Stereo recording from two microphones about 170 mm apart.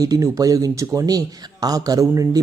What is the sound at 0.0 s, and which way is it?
Speech, 20° right (ahead or behind).